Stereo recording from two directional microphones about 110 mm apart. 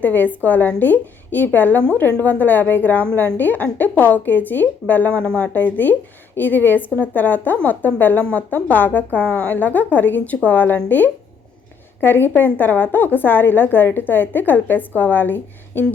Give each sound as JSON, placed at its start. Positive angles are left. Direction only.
{"t": 0.0, "sound": "a woman's voice", "side_deg": 15}